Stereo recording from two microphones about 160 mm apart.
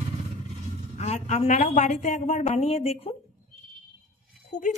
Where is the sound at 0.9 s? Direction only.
45° left (ahead or behind).